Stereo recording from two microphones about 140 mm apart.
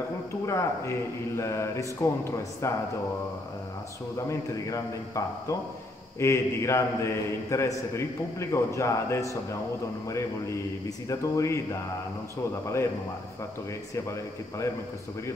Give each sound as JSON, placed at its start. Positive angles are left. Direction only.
{"t": 0.5, "sound": "a man's voice", "side_deg": 20}
{"t": 4.3, "sound": "a man's voice", "side_deg": 25}